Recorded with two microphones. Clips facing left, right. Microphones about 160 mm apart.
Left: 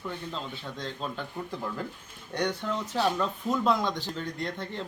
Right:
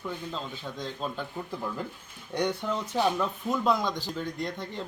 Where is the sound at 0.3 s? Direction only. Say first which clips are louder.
Right 1 dB; 5° right (ahead or behind).